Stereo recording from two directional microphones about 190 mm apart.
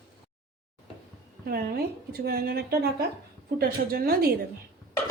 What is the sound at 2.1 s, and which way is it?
Speech, 55° right (ahead or behind).